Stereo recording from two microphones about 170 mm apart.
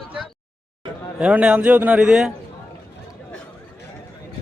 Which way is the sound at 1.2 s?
5° right (ahead or behind).